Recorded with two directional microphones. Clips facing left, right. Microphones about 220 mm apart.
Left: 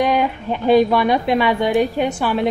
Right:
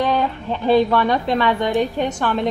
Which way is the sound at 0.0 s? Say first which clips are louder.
Left 2 dB; 15° left (ahead or behind).